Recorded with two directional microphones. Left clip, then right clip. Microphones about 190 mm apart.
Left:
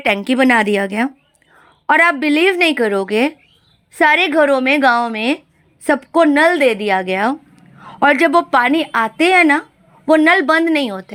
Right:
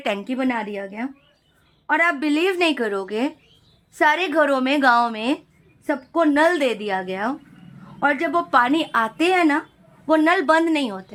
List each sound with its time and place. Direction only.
0.0 s a woman's voice: 20° left (ahead or behind)
0.3 s speech: 55° left (ahead or behind)
1.9 s a woman's voice: 35° left (ahead or behind)
2.1 s a woman's voice: 20° left (ahead or behind)
5.8 s speech: 45° left (ahead or behind)
6.3 s a woman's voice: 15° left (ahead or behind)
7.9 s a man's voice: 40° left (ahead or behind)
8.4 s a woman's voice: 20° left (ahead or behind)